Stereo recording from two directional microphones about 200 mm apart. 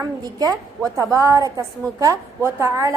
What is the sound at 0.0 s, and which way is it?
A woman's voice, 20° right (ahead or behind).